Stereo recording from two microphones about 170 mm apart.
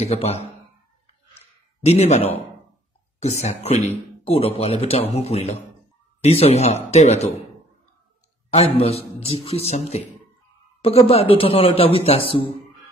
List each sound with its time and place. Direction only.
0.0 s a man's voice: 40° left (ahead or behind)
1.4 s a sound: 40° left (ahead or behind)
3.2 s a man's voice: 40° left (ahead or behind)
8.5 s a man's voice: 35° left (ahead or behind)